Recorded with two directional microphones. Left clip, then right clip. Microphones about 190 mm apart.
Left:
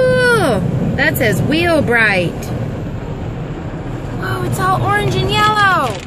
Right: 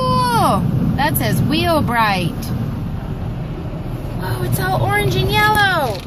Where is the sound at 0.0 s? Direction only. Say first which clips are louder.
Left 4 dB; 90° right; by 1.3 s 70° right (ahead or behind).